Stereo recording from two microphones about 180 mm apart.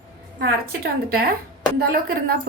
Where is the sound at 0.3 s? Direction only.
60° right (ahead or behind).